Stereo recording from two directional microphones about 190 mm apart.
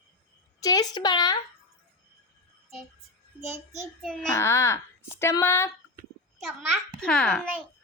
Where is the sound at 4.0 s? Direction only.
5° left (ahead or behind).